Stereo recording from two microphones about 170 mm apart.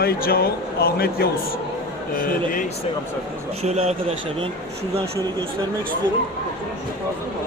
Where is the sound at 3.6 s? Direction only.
40° right (ahead or behind).